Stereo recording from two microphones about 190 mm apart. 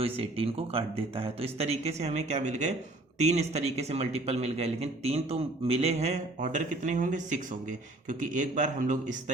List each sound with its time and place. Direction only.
0.0 s a man's voice: 30° right (ahead or behind)